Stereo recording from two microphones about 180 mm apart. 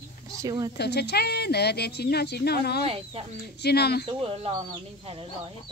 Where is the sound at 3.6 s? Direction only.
65° left (ahead or behind).